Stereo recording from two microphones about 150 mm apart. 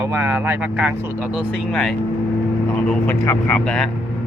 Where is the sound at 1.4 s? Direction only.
Centre (ahead or behind).